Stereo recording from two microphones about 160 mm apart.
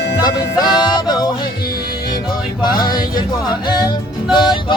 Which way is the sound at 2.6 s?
25° left (ahead or behind).